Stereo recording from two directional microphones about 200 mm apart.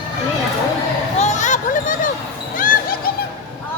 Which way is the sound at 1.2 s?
35° left (ahead or behind).